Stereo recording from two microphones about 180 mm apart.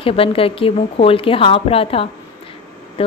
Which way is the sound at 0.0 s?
30° left (ahead or behind).